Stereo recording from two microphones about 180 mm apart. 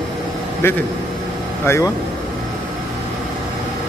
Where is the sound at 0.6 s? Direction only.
15° left (ahead or behind).